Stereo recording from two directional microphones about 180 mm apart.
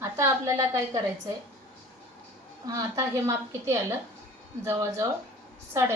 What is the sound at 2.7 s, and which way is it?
A woman's voice, 20° right (ahead or behind).